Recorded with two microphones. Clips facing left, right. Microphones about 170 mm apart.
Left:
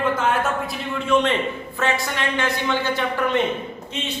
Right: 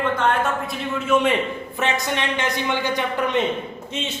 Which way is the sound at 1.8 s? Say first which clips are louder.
Even; 20° right (ahead or behind).